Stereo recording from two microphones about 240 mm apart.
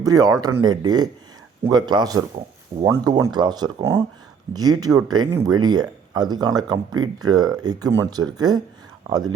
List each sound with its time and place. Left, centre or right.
0.0 s speech: centre